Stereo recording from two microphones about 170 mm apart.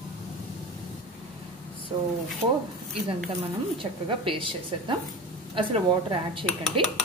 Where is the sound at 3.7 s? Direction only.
30° right (ahead or behind).